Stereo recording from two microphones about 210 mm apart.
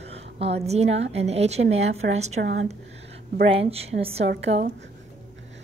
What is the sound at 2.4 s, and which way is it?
Speech, 60° right (ahead or behind).